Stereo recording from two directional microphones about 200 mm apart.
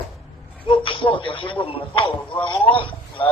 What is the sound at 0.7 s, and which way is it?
A man's voice, 25° left (ahead or behind).